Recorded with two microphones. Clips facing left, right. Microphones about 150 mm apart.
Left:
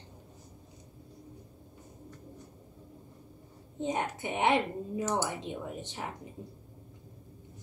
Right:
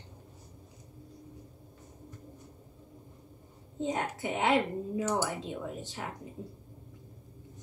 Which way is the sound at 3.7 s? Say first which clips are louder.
Even; 20° left (ahead or behind).